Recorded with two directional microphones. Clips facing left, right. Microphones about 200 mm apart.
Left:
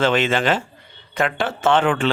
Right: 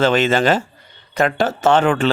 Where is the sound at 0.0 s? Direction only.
40° right (ahead or behind).